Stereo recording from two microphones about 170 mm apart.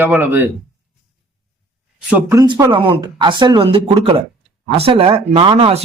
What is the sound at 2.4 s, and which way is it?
Speech, 20° right (ahead or behind).